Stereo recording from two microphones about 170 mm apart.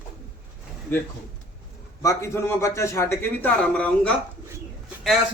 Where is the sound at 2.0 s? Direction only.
15° left (ahead or behind).